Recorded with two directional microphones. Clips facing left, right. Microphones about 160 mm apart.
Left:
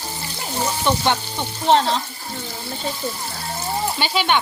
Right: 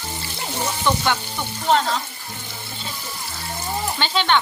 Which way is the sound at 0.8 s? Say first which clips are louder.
Even; 20° left (ahead or behind).